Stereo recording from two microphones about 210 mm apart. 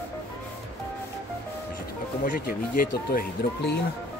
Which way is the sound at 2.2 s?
40° left (ahead or behind).